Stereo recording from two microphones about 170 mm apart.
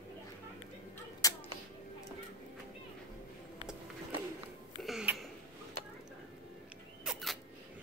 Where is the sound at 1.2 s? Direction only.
20° left (ahead or behind).